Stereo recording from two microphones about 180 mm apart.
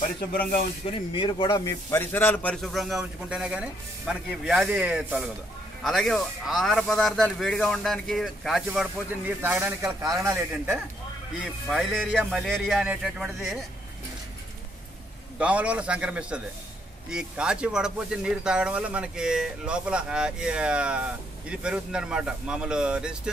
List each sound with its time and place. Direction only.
0.3 s speech: 55° left (ahead or behind)
0.8 s speech: 30° left (ahead or behind); by 10.8 s 15° right (ahead or behind)
11.4 s speech: centre (ahead or behind)
15.3 s speech: 5° right (ahead or behind)